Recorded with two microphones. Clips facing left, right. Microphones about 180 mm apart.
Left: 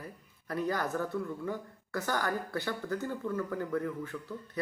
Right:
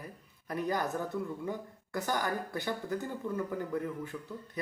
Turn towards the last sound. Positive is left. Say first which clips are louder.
# left 2 dB
turn(degrees=-20)  # may be behind; listen again after turning